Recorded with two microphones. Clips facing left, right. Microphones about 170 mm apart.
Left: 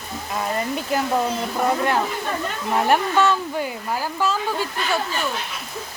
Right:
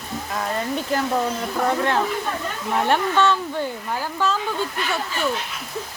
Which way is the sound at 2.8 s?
10° left (ahead or behind).